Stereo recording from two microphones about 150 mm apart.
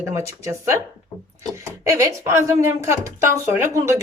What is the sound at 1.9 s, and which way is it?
A woman's voice, 20° right (ahead or behind).